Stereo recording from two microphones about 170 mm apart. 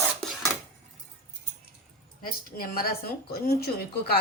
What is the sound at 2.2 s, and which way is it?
Speech, 60° left (ahead or behind).